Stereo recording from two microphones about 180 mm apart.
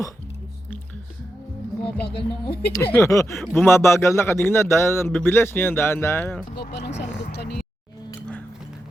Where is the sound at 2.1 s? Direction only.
30° left (ahead or behind).